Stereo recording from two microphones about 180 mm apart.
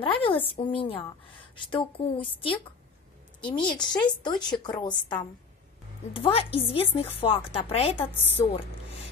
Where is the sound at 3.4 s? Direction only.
5° left (ahead or behind).